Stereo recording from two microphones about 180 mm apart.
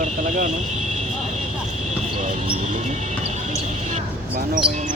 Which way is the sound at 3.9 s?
45° right (ahead or behind).